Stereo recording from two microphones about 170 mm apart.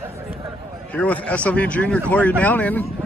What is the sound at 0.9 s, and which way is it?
Speech, 10° left (ahead or behind).